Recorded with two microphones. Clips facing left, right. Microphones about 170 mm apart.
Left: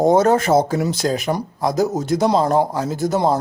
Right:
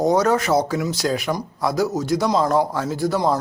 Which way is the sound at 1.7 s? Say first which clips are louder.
Left 2 dB; 50° left (ahead or behind).